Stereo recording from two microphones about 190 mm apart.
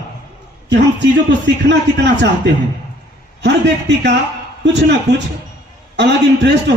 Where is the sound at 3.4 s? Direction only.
65° right (ahead or behind).